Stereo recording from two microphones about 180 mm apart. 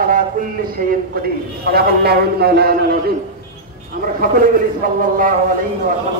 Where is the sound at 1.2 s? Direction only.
55° right (ahead or behind).